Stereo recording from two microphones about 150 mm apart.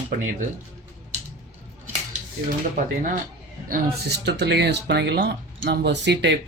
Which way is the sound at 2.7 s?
60° right (ahead or behind).